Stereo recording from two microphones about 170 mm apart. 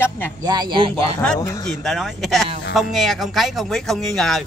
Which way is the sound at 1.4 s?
20° left (ahead or behind).